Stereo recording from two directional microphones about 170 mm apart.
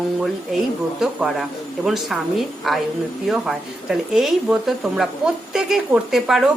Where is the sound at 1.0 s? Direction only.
Centre (ahead or behind).